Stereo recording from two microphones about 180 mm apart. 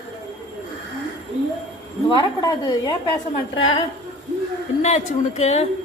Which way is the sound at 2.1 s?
25° left (ahead or behind).